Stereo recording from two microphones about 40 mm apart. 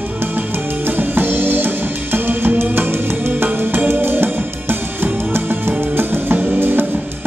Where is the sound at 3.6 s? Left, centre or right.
Right.